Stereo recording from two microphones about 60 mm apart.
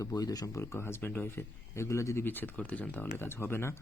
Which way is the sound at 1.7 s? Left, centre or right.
Left.